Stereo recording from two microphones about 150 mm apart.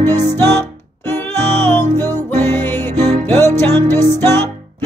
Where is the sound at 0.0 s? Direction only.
15° left (ahead or behind).